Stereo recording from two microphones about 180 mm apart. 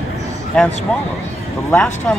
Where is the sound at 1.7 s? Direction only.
5° left (ahead or behind).